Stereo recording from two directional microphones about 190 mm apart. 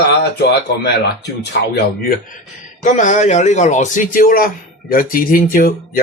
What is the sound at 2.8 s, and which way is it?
A man's voice, 40° left (ahead or behind).